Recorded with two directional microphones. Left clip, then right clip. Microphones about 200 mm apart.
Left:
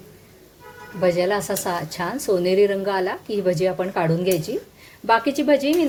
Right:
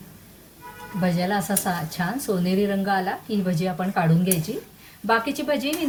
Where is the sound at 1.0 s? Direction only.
35° left (ahead or behind).